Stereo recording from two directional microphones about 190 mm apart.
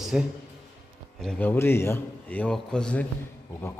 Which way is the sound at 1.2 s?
10° left (ahead or behind).